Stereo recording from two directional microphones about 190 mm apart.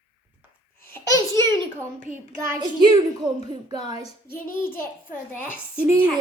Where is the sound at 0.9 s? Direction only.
15° left (ahead or behind).